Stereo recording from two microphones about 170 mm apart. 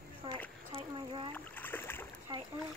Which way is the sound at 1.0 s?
30° right (ahead or behind).